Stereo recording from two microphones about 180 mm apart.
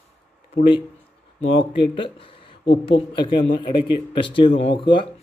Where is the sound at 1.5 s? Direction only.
30° left (ahead or behind).